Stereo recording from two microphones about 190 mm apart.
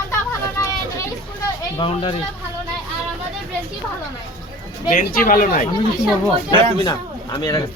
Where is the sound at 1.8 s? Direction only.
25° left (ahead or behind).